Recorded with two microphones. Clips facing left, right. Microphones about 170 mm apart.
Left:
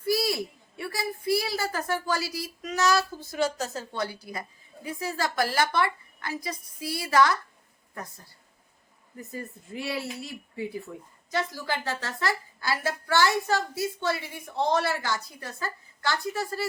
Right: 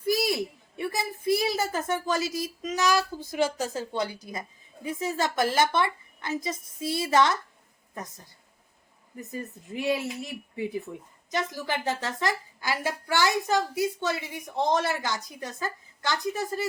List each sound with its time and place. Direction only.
0.0 s a woman's voice: 20° right (ahead or behind)